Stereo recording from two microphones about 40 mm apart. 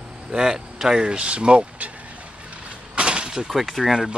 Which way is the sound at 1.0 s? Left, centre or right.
Right.